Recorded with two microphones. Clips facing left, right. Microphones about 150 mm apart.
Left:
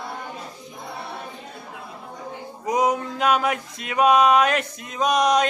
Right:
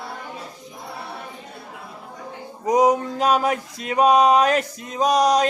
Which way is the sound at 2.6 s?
40° right (ahead or behind).